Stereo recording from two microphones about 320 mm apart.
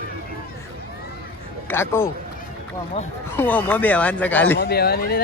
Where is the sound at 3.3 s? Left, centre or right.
Centre.